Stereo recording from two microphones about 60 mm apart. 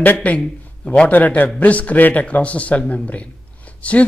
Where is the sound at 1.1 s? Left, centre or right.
Left.